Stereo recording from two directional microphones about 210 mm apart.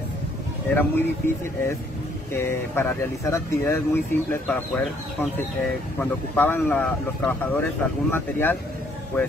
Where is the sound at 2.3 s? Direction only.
10° left (ahead or behind).